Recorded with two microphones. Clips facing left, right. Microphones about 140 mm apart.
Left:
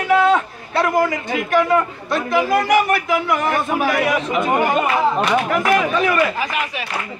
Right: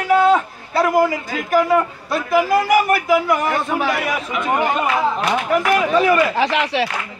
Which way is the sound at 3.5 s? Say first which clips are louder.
Left 1 dB; 15° left (ahead or behind).